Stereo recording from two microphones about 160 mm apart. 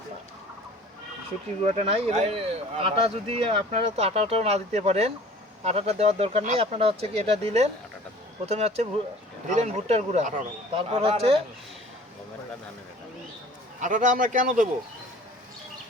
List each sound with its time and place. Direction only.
1.6 s speech: 40° right (ahead or behind)
10.8 s speech: 35° right (ahead or behind)
13.8 s a man's voice: 55° right (ahead or behind)